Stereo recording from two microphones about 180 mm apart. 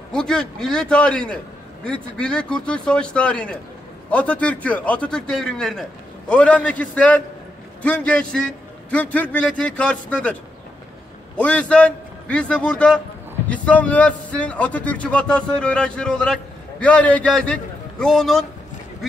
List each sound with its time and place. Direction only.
0.1 s speech: 5° left (ahead or behind)
11.3 s speech: 5° left (ahead or behind)